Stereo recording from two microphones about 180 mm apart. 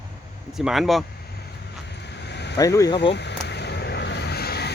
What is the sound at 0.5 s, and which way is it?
Speech, centre (ahead or behind).